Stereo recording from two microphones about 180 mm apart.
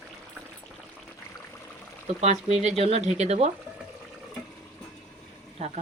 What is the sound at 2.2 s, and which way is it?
Speech, 40° right (ahead or behind).